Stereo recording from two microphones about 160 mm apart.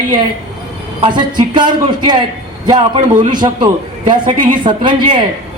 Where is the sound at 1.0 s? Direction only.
30° right (ahead or behind).